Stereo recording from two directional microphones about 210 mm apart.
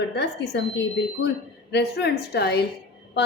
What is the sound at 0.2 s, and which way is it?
Speech, 55° left (ahead or behind).